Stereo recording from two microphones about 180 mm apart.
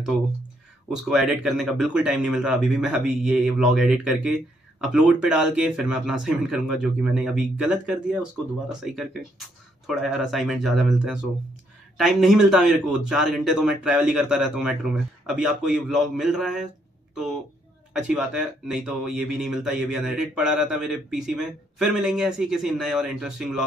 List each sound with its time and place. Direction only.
0.8 s speech: centre (ahead or behind)
9.8 s speech: centre (ahead or behind)